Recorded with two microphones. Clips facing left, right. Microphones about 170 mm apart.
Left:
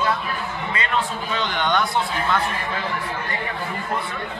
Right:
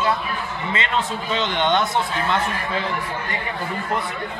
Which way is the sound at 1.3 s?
20° right (ahead or behind).